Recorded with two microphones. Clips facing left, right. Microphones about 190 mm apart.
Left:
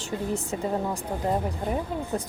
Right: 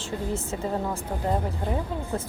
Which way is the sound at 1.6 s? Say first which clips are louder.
Left 1 dB; 15° left (ahead or behind).